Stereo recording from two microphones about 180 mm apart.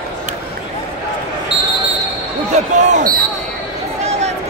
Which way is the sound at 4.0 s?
40° right (ahead or behind).